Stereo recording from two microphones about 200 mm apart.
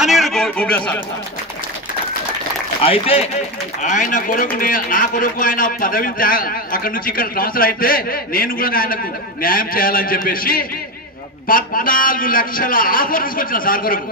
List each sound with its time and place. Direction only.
0.0 s a man's voice: centre (ahead or behind)
2.8 s a man's voice: 30° left (ahead or behind); by 14.0 s 45° left (ahead or behind)